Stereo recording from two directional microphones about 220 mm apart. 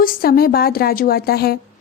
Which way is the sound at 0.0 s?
40° left (ahead or behind).